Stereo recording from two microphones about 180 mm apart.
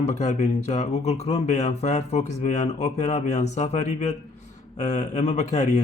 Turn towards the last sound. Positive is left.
turn(degrees=40)  # may be behind; listen again after turning